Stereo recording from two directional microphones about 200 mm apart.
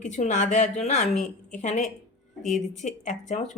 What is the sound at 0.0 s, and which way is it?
A woman's voice, 35° left (ahead or behind).